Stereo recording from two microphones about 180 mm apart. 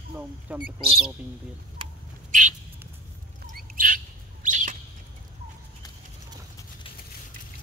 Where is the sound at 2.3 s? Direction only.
45° right (ahead or behind).